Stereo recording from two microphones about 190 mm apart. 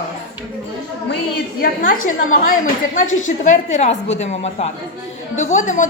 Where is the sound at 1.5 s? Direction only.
50° left (ahead or behind).